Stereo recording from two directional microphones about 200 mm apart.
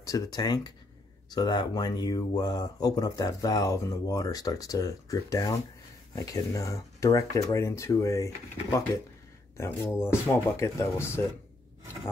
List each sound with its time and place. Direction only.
0.0 s speech: 20° left (ahead or behind)
9.6 s speech: 10° left (ahead or behind)